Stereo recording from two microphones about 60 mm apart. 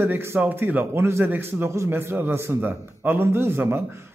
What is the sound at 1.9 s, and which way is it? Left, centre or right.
A man's voice, right.